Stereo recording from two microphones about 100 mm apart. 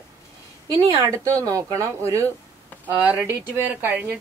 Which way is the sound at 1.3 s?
30° right (ahead or behind).